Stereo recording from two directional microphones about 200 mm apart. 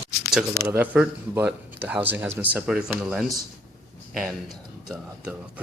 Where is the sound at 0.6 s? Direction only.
10° right (ahead or behind).